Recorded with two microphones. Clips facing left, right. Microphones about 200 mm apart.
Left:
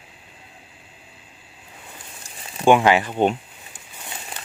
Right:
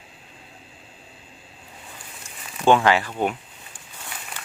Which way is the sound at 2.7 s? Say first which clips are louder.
Left 2 dB; 15° left (ahead or behind).